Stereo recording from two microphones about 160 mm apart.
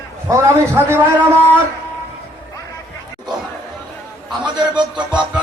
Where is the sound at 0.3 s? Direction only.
15° right (ahead or behind).